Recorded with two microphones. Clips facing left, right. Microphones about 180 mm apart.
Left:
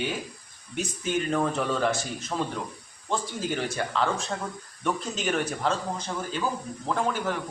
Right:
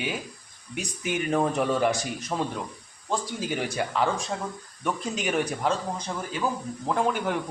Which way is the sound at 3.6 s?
15° right (ahead or behind).